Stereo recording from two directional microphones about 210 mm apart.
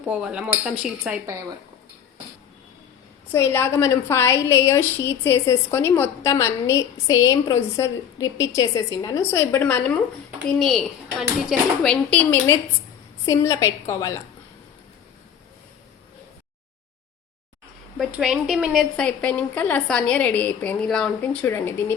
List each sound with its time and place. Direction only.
0.0 s a woman's voice: 5° right (ahead or behind)
3.3 s a woman's voice: 10° left (ahead or behind)
17.9 s a woman's voice: centre (ahead or behind)